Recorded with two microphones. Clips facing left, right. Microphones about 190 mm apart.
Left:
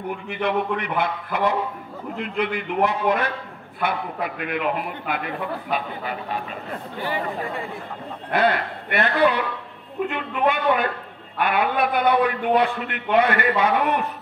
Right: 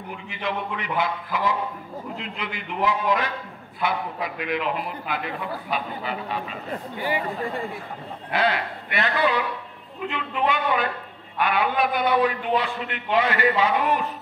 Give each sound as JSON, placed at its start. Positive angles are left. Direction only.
{"t": 0.1, "sound": "a man's voice", "side_deg": 55}
{"t": 8.3, "sound": "a man's voice", "side_deg": 55}